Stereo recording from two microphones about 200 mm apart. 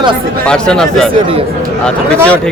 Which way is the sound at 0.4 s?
5° left (ahead or behind).